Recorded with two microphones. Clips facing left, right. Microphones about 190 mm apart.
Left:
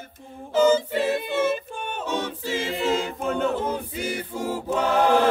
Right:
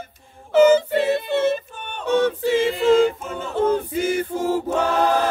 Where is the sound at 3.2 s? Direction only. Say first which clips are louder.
Left 6 dB; 65° left (ahead or behind).